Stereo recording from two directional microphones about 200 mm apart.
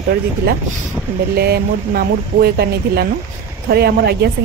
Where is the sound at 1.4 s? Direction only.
50° right (ahead or behind).